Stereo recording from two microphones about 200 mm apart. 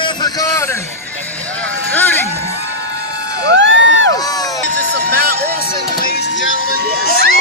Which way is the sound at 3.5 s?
65° right (ahead or behind).